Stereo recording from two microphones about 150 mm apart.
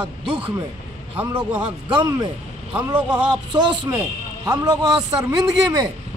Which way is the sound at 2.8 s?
10° right (ahead or behind).